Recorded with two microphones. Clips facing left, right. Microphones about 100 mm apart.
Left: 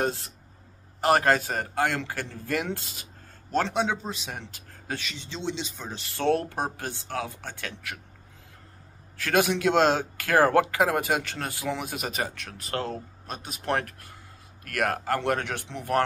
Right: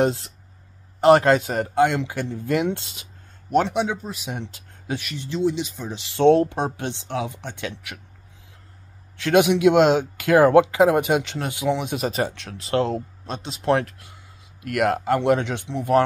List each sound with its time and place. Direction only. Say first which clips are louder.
0.0 s speech: right 7 dB; 25° right (ahead or behind)
3.4 s speech: right 5 dB; 15° right (ahead or behind)
4.3 s speech: right 6 dB; 20° right (ahead or behind)
4.9 s speech: right 8 dB; 10° right (ahead or behind)
6.1 s speech: right 9 dB; 20° right (ahead or behind)
9.1 s speech: right 6 dB; 20° right (ahead or behind)